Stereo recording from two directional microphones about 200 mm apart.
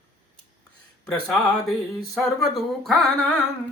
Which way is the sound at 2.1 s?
Centre (ahead or behind).